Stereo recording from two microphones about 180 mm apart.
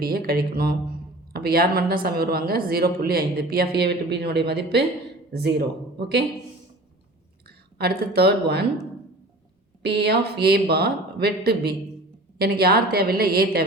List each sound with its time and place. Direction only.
0.0 s a woman's voice: 60° right (ahead or behind)
7.4 s speech: 60° right (ahead or behind)
9.8 s a woman's voice: 65° right (ahead or behind)